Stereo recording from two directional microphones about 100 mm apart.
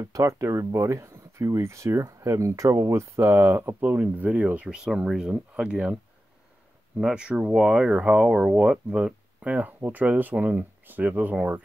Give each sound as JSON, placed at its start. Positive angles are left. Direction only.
{"t": 0.0, "sound": "speech", "side_deg": -35}
{"t": 7.0, "sound": "speech", "side_deg": -5}